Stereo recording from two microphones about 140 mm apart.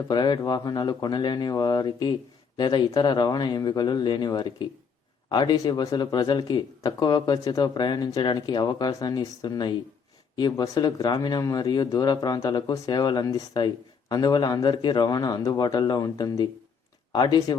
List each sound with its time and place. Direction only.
0.1 s speech: 30° left (ahead or behind)